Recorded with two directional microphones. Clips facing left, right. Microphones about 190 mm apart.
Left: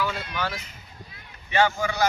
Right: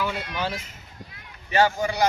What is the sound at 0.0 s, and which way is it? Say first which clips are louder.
Speech: right 1 dB; 25° right (ahead or behind).